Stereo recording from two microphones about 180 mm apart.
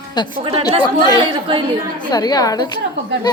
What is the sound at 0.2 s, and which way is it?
A woman's voice, 25° left (ahead or behind).